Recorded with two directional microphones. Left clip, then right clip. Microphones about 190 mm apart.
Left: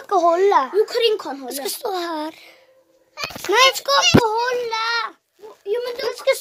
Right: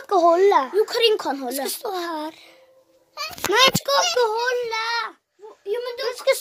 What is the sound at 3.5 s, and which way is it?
A child's voice, 20° left (ahead or behind).